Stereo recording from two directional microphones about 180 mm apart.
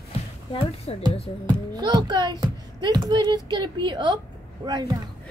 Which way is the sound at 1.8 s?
25° right (ahead or behind).